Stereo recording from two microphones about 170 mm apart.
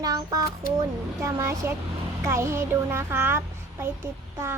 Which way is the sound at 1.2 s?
15° right (ahead or behind).